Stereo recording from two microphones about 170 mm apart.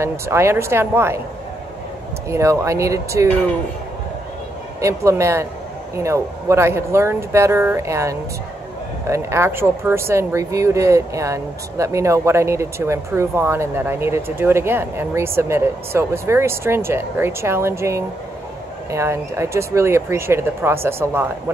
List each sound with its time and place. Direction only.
0.0 s speech: 15° right (ahead or behind)
2.2 s speech: 15° right (ahead or behind)
4.7 s speech: 15° right (ahead or behind)